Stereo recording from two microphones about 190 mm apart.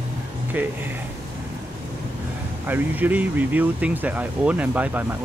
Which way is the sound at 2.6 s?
10° right (ahead or behind).